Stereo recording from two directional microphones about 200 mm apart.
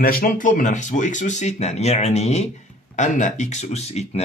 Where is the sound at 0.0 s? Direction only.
45° left (ahead or behind).